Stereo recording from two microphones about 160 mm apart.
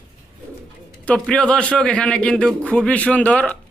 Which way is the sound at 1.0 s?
5° left (ahead or behind).